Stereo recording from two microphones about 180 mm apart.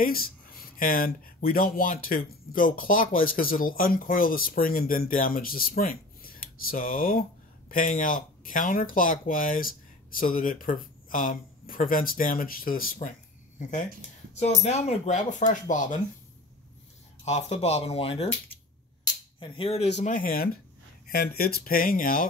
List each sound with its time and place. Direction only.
0.0 s speech: 55° left (ahead or behind)
17.2 s speech: 40° left (ahead or behind)
19.4 s speech: 30° left (ahead or behind)
20.0 s speech: 45° left (ahead or behind)
21.1 s speech: 60° left (ahead or behind)